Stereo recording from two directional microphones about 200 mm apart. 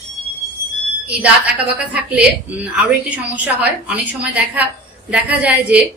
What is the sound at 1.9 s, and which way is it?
A woman's voice, 5° right (ahead or behind).